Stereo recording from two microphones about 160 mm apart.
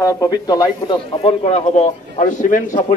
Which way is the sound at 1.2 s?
40° left (ahead or behind).